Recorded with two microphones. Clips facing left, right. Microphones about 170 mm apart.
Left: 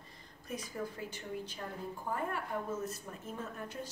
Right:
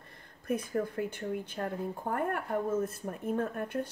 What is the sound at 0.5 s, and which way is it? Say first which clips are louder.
A woman's voice: right 9 dB; 60° right (ahead or behind).